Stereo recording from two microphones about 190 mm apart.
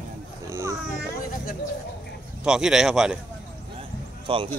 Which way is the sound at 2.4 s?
5° right (ahead or behind).